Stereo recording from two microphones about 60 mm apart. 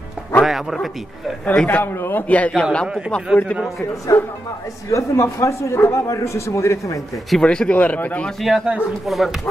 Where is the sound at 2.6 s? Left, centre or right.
Centre.